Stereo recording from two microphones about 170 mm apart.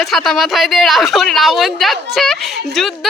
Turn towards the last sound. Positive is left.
turn(degrees=0)  # may be behind; listen again after turning